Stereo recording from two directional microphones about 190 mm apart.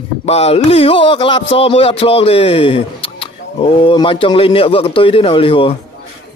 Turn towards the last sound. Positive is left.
turn(degrees=30)  # may be behind; listen again after turning